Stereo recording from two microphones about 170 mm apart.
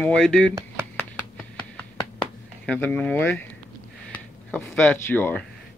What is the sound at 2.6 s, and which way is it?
Speech, 10° left (ahead or behind).